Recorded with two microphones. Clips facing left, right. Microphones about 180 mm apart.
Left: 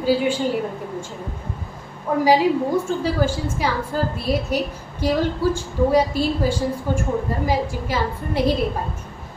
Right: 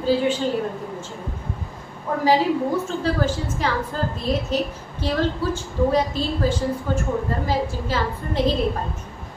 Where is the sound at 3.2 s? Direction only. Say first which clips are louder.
Left 1 dB; 10° left (ahead or behind).